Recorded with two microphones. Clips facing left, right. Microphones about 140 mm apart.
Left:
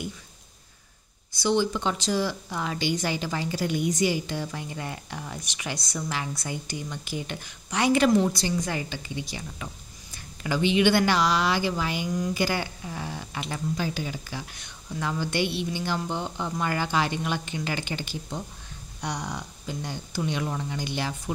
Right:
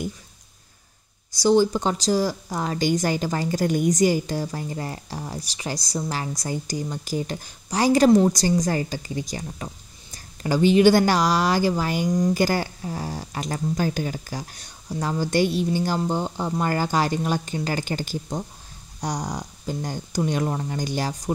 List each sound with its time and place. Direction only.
1.3 s speech: 40° right (ahead or behind)